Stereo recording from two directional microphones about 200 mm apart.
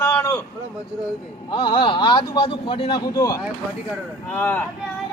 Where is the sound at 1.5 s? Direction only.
25° left (ahead or behind).